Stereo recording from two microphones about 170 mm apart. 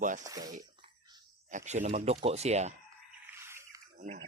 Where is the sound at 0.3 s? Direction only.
20° right (ahead or behind).